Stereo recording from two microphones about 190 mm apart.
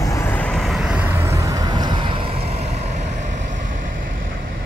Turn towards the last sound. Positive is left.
turn(degrees=-40)  # may be behind; listen again after turning